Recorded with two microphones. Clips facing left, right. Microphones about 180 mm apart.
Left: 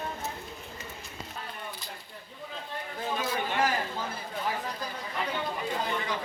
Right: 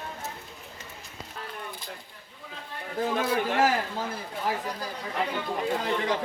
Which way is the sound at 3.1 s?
60° right (ahead or behind).